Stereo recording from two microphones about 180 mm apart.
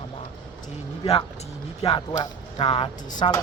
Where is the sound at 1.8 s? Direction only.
25° left (ahead or behind).